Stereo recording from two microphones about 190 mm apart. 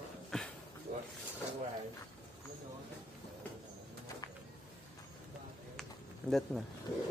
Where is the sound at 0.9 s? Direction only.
50° right (ahead or behind).